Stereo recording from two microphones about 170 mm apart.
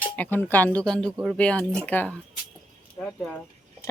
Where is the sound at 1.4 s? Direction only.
5° left (ahead or behind).